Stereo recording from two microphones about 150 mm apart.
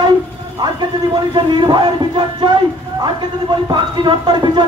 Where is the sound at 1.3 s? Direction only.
30° right (ahead or behind).